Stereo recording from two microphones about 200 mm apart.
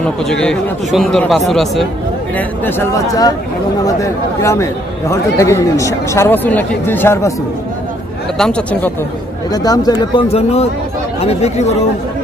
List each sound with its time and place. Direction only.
0.0 s speech: 5° left (ahead or behind)
8.4 s speech: 5° left (ahead or behind)
9.5 s speech: 20° left (ahead or behind)